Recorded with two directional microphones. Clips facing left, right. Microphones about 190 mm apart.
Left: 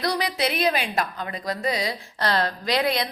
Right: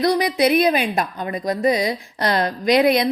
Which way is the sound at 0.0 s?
20° right (ahead or behind).